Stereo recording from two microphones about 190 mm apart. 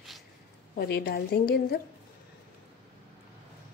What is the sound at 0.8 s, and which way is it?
A woman's voice, 55° left (ahead or behind).